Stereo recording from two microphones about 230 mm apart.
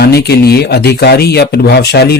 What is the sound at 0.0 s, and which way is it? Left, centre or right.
Speech, left.